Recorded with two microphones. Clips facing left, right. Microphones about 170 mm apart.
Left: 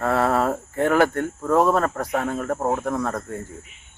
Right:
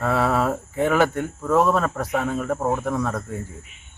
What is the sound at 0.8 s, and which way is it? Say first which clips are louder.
Speech: left 1 dB; 10° right (ahead or behind).